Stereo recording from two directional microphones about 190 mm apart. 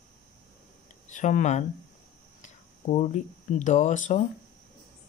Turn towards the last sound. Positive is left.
turn(degrees=40)  # may be behind; listen again after turning